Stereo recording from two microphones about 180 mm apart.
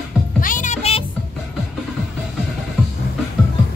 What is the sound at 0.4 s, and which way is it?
Music, 45° left (ahead or behind).